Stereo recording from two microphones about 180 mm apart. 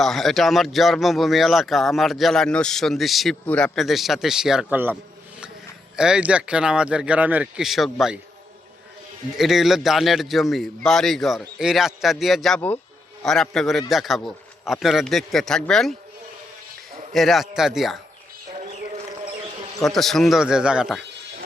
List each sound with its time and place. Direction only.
0.0 s speech: centre (ahead or behind)
6.0 s speech: 5° right (ahead or behind)
9.4 s speech: centre (ahead or behind)
17.1 s speech: centre (ahead or behind)
18.5 s music: 40° right (ahead or behind)
19.8 s speech: centre (ahead or behind)